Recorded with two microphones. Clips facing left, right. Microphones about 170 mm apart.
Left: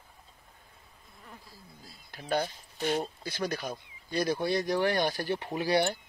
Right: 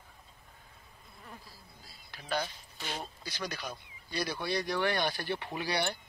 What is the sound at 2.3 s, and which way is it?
Speech, 50° left (ahead or behind).